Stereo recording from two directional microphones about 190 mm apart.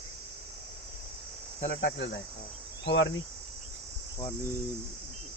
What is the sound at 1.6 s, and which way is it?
Cricket, 60° left (ahead or behind).